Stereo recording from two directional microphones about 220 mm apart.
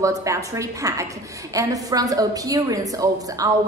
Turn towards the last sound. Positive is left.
turn(degrees=-15)  # may be behind; listen again after turning